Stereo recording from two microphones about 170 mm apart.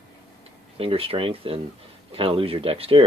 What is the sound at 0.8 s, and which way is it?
Speech, 35° right (ahead or behind).